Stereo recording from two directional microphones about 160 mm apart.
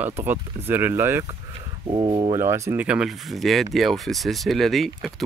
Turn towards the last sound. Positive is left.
turn(degrees=0)  # may be behind; listen again after turning